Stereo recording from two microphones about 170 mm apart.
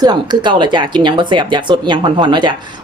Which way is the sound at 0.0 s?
25° right (ahead or behind).